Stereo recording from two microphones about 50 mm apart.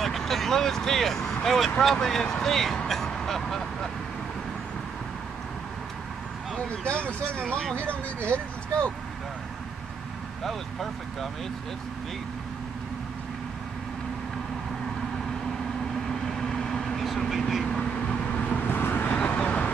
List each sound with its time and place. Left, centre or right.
0.0 s speech: centre
2.4 s vehicle: centre
6.8 s speech: left
10.4 s speech: centre
16.1 s vehicle: centre
17.6 s vehicle: centre
18.7 s vehicle: left
19.1 s vehicle: left